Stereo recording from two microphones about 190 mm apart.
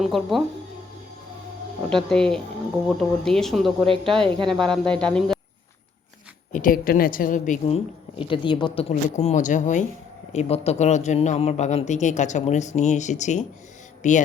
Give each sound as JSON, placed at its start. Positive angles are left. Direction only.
{"t": 0.0, "sound": "speech", "side_deg": 0}
{"t": 1.9, "sound": "speech", "side_deg": 5}
{"t": 6.5, "sound": "a woman's voice", "side_deg": 45}
{"t": 8.2, "sound": "a woman's voice", "side_deg": 25}
{"t": 8.9, "sound": "speech", "side_deg": 40}